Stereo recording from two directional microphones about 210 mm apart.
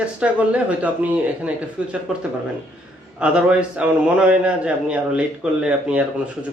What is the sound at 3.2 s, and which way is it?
A man's voice, 5° right (ahead or behind).